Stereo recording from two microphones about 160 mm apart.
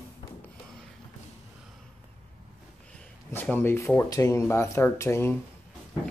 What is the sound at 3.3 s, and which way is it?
Speech, 10° left (ahead or behind).